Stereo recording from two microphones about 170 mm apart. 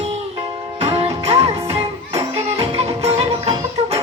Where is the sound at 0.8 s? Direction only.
35° right (ahead or behind).